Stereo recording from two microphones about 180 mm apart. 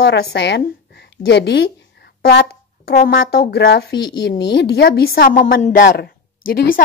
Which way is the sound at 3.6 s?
75° left (ahead or behind).